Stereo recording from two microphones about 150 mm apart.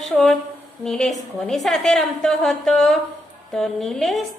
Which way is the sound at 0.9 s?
Centre (ahead or behind).